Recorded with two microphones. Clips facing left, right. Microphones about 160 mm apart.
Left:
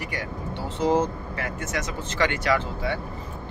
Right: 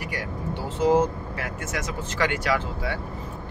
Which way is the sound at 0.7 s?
10° right (ahead or behind).